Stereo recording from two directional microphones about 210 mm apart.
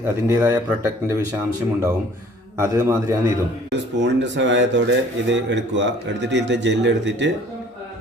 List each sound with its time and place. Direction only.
0.3 s speech: 10° right (ahead or behind)
3.7 s speech: 55° right (ahead or behind)